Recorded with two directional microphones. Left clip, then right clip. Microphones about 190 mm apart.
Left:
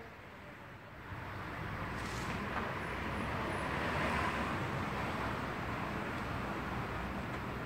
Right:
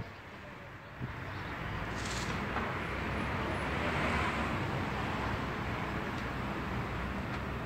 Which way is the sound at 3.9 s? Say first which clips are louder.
Right 2 dB; 35° left (ahead or behind).